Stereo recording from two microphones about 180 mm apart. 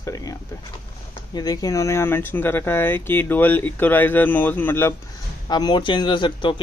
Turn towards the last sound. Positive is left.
turn(degrees=25)  # may be behind; listen again after turning